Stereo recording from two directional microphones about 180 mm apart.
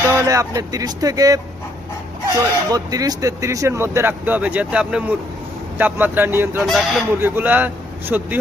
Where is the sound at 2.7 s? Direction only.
20° right (ahead or behind).